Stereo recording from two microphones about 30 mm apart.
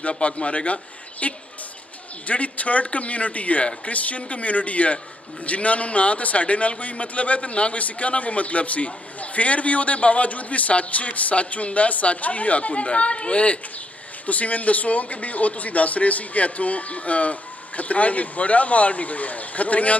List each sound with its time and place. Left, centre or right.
0.2 s a man's voice: left
14.2 s speech: left